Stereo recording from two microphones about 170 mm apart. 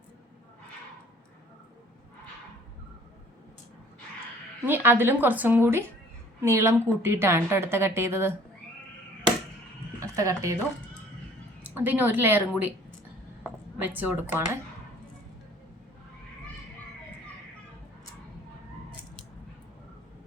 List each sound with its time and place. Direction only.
4.6 s a woman's voice: 10° right (ahead or behind)
10.0 s speech: 20° right (ahead or behind)
11.6 s a woman's voice: 10° right (ahead or behind)
13.8 s a woman's voice: 10° right (ahead or behind)